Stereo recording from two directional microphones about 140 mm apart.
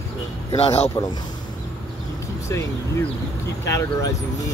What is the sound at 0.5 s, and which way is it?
Speech, 45° left (ahead or behind).